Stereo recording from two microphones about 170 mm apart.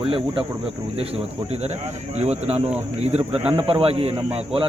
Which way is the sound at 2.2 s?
40° right (ahead or behind).